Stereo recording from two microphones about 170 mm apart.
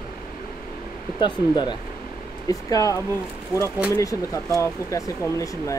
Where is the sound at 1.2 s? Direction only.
25° left (ahead or behind).